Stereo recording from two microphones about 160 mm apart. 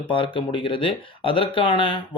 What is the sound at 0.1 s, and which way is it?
Speech, 35° left (ahead or behind).